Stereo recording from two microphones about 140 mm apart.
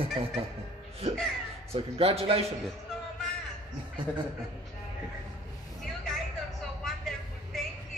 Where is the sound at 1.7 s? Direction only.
45° right (ahead or behind).